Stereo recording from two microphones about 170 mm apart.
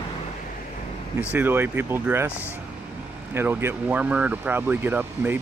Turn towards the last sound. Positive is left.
turn(degrees=-10)  # may be behind; listen again after turning